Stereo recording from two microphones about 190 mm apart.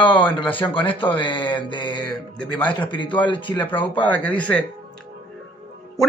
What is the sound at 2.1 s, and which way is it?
Speech, 5° left (ahead or behind).